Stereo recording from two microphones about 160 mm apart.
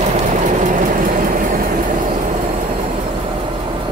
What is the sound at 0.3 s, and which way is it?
Vehicle, 50° right (ahead or behind).